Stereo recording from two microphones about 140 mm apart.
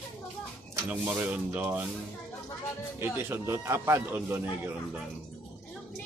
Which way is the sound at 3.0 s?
15° right (ahead or behind).